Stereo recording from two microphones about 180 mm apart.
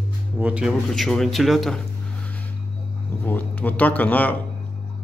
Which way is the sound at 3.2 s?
10° left (ahead or behind).